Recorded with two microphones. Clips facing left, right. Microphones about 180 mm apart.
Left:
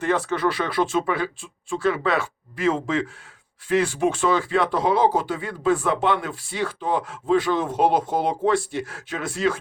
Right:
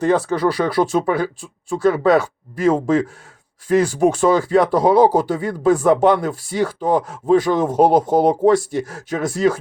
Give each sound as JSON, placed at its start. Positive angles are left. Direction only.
{"t": 0.0, "sound": "speech", "side_deg": -40}